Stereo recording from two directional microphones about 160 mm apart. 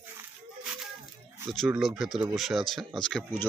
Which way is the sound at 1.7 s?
Centre (ahead or behind).